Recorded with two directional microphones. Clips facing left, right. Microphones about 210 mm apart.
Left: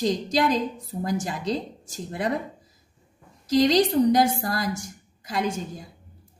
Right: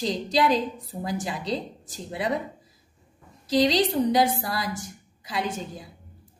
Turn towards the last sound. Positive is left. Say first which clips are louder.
# left 2 dB
turn(degrees=45)  # may be behind; listen again after turning